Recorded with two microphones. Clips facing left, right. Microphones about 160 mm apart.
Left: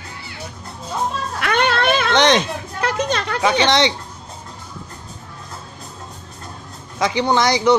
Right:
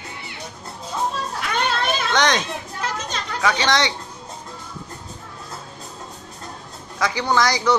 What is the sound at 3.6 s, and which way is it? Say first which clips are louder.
Speech: left 4 dB; 20° left (ahead or behind).